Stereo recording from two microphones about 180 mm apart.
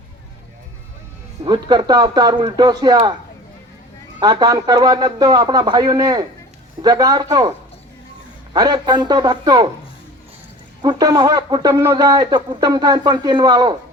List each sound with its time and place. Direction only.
1.5 s speech: 25° right (ahead or behind)
4.2 s speech: 20° right (ahead or behind)
8.5 s speech: 20° right (ahead or behind)
10.8 s speech: 20° right (ahead or behind)